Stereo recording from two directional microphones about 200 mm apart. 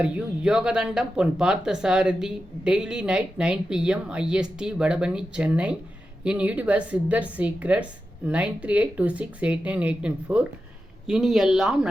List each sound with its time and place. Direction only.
0.0 s speech: 5° right (ahead or behind)